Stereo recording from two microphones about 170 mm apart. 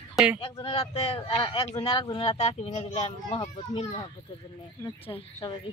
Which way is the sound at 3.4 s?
25° left (ahead or behind).